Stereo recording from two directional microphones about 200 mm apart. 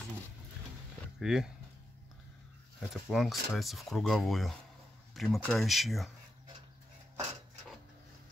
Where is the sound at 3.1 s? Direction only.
Centre (ahead or behind).